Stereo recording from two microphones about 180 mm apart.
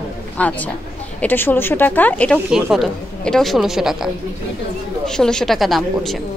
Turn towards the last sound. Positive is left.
turn(degrees=0)  # may be behind; listen again after turning